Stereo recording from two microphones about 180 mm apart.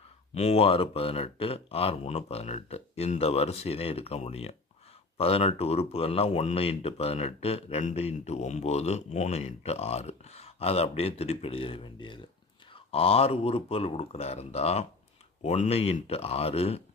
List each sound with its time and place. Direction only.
0.3 s speech: 35° left (ahead or behind)